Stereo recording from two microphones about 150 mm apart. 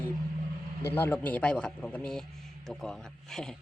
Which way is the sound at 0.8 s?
15° left (ahead or behind).